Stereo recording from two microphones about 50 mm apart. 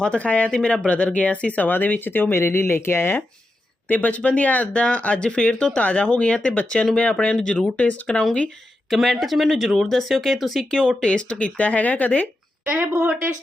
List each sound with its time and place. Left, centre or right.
0.0 s speech: left
1.7 s speech: left
3.8 s speech: left; by 10.6 s centre
10.6 s speech: centre; by 12.3 s left